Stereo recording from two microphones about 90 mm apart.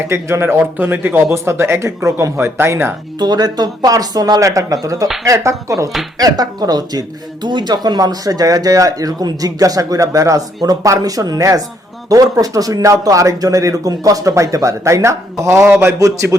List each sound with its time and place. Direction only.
0.0 s speech: 30° right (ahead or behind)
3.2 s speech: 50° right (ahead or behind)